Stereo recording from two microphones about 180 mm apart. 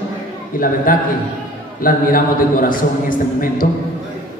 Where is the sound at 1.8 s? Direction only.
50° left (ahead or behind).